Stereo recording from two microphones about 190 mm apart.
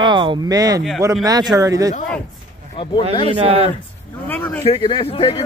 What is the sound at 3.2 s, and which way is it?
Speech, 30° right (ahead or behind).